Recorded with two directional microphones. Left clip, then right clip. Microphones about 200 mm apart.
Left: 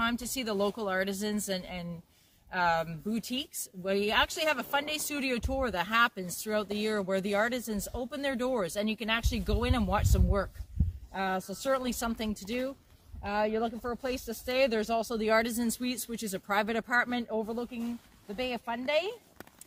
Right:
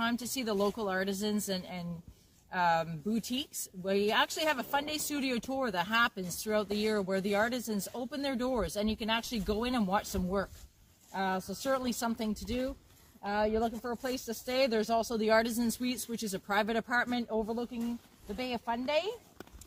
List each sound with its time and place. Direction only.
0.0 s speech: 10° left (ahead or behind)